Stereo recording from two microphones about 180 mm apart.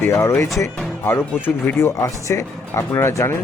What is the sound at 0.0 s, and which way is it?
Speech, 15° left (ahead or behind).